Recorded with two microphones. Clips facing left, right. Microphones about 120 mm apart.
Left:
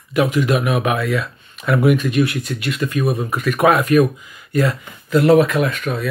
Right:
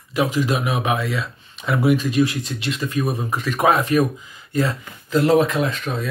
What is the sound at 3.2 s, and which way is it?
Speech, 35° right (ahead or behind).